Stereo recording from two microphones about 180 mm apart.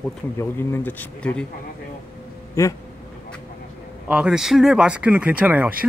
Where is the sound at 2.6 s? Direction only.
15° left (ahead or behind).